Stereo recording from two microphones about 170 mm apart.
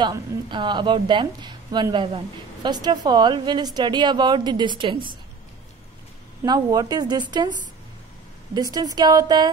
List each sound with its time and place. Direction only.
0.0 s a woman's voice: 25° right (ahead or behind)
6.4 s a woman's voice: 25° right (ahead or behind)
8.5 s a woman's voice: 20° right (ahead or behind)